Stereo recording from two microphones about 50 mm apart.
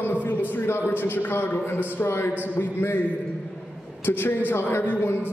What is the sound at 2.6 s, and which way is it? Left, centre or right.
Speech, left.